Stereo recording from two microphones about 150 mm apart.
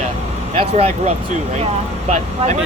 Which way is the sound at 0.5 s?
45° right (ahead or behind).